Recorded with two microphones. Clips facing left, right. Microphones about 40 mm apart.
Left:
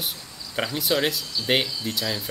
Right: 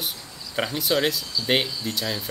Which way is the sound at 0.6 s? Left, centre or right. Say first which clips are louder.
Right 1 dB; centre.